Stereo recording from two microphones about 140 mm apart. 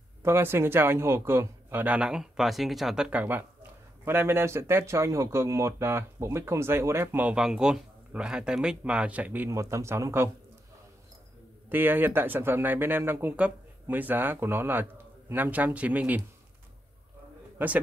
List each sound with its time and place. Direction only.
0.2 s speech: 15° right (ahead or behind)
11.7 s speech: 15° right (ahead or behind)